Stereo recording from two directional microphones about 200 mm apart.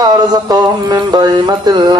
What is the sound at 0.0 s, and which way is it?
Wild animals, 20° right (ahead or behind).